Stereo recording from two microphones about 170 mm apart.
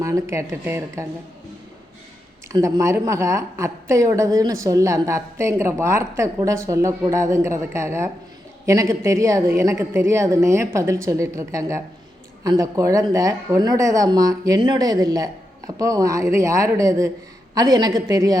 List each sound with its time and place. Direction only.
0.0 s a woman's voice: 15° right (ahead or behind)
2.5 s a woman's voice: 20° right (ahead or behind)